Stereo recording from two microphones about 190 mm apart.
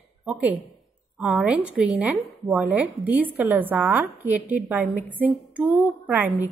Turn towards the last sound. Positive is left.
turn(degrees=-10)  # may be behind; listen again after turning